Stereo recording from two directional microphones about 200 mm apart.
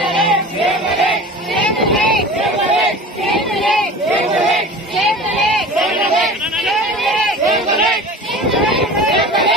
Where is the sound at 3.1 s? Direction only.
Centre (ahead or behind).